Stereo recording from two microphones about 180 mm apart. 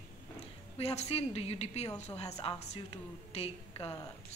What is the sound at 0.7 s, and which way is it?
A woman's voice, 35° left (ahead or behind).